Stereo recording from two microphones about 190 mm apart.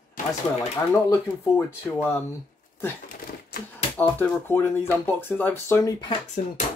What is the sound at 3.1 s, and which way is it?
Typewriter, 50° left (ahead or behind).